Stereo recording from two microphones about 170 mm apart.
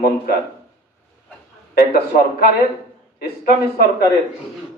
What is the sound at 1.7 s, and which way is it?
A man's voice, 65° left (ahead or behind).